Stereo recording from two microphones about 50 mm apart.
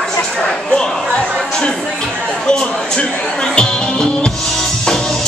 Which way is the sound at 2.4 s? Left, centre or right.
Centre.